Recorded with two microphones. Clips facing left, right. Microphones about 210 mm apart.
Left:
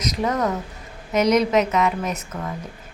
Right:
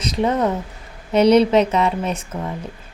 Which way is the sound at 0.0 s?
30° right (ahead or behind).